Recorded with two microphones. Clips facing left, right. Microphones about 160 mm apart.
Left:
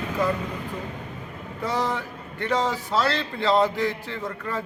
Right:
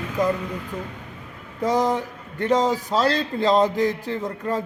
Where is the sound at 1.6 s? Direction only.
40° right (ahead or behind).